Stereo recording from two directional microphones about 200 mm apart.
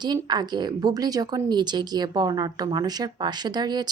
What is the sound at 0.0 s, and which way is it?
A woman's voice, 20° right (ahead or behind).